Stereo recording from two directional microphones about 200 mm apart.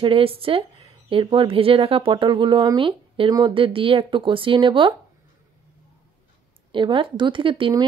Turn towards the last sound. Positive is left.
turn(degrees=-25)  # may be behind; listen again after turning